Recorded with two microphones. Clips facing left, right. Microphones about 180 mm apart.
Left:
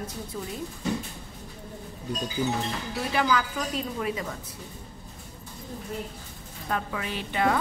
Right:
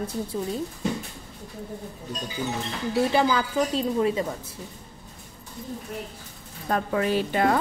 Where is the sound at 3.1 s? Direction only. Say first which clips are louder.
Right 3 dB; 30° right (ahead or behind).